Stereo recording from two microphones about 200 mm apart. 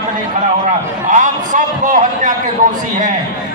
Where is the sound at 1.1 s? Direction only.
40° right (ahead or behind).